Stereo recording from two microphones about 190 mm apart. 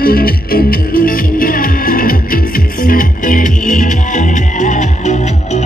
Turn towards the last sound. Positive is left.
turn(degrees=40)  # may be behind; listen again after turning